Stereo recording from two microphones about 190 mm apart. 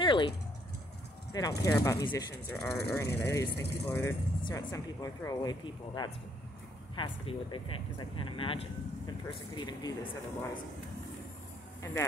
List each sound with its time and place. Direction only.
0.0 s typing: 25° left (ahead or behind)
1.3 s speech: 20° left (ahead or behind)
2.5 s speech: centre (ahead or behind)
2.9 s speech: 15° left (ahead or behind)
11.8 s speech: 15° left (ahead or behind)